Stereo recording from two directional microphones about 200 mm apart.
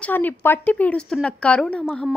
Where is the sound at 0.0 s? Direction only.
10° left (ahead or behind).